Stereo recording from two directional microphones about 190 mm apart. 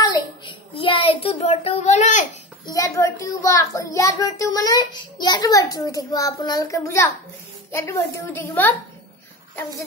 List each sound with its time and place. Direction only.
0.0 s child singing: 25° left (ahead or behind)
2.6 s a child's voice: 15° left (ahead or behind)